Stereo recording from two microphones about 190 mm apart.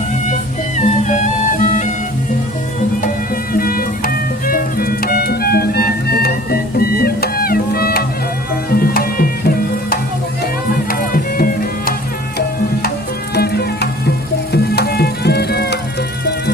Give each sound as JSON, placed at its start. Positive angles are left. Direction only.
{"t": 0.8, "sound": "music", "side_deg": 40}
{"t": 3.5, "sound": "music", "side_deg": 50}
{"t": 13.3, "sound": "music", "side_deg": 55}